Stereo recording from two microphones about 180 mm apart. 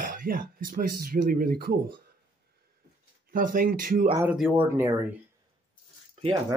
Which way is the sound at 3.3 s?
50° right (ahead or behind).